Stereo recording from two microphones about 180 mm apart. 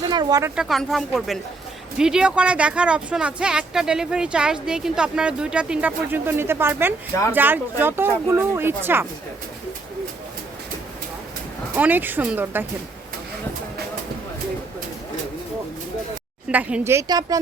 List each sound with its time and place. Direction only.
0.1 s speech: 20° right (ahead or behind)
0.5 s speech: centre (ahead or behind)
11.7 s speech: 10° right (ahead or behind)
16.5 s speech: 5° right (ahead or behind)